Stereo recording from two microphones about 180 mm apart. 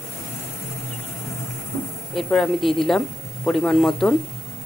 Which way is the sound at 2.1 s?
Centre (ahead or behind).